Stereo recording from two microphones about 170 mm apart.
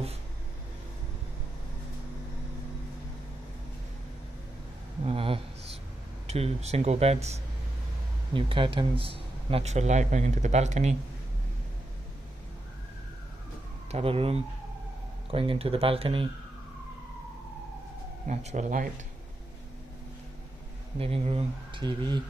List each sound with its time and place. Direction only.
5.0 s a sound: 35° right (ahead or behind)
6.2 s speech: 35° right (ahead or behind)
13.9 s speech: 35° right (ahead or behind)
18.2 s speech: 40° right (ahead or behind)
21.0 s speech: 35° right (ahead or behind)